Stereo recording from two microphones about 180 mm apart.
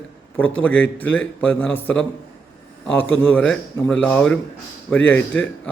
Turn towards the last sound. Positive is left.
turn(degrees=10)  # may be behind; listen again after turning